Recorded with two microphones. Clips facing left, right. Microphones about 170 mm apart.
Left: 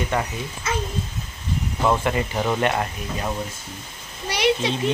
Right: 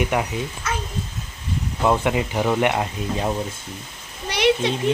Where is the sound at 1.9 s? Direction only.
15° right (ahead or behind).